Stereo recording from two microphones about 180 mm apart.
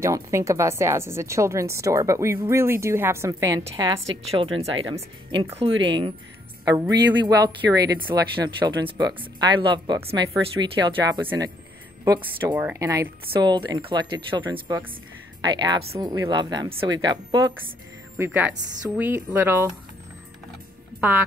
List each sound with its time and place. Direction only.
0.0 s a woman's voice: 15° right (ahead or behind)
4.3 s a woman's voice: 30° right (ahead or behind)
18.1 s a woman's voice: 10° right (ahead or behind)